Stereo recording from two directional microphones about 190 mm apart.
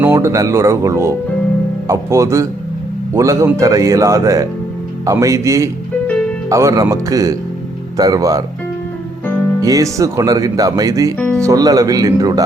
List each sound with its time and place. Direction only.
0.0 s speech: 15° right (ahead or behind)
9.6 s speech: 20° right (ahead or behind)
11.2 s speech: 5° left (ahead or behind)
11.4 s speech: 20° right (ahead or behind)